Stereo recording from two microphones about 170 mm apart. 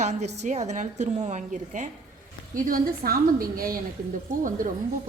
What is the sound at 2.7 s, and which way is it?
A woman's voice, 60° right (ahead or behind).